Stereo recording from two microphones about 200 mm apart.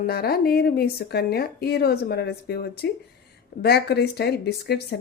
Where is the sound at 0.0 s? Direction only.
50° left (ahead or behind).